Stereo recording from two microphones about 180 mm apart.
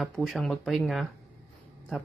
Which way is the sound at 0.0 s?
Centre (ahead or behind).